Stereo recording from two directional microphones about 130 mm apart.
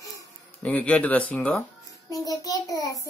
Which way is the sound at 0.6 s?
10° left (ahead or behind).